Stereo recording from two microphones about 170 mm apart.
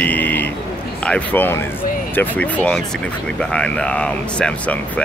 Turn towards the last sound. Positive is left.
turn(degrees=5)  # may be behind; listen again after turning